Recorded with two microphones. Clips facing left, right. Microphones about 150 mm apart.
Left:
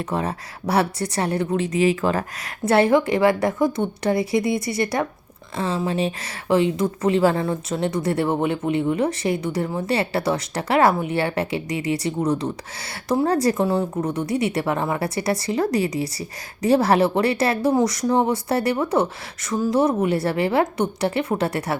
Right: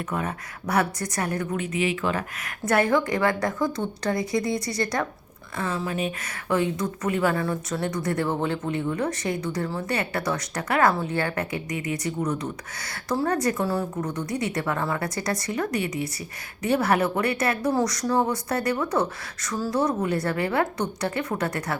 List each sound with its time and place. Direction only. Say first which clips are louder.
0.0 s speech: left 4 dB; 30° left (ahead or behind)